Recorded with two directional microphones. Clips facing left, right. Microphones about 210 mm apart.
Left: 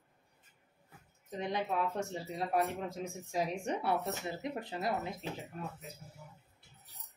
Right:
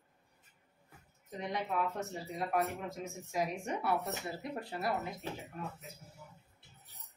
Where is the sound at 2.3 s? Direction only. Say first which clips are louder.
Left 1 dB; 30° left (ahead or behind).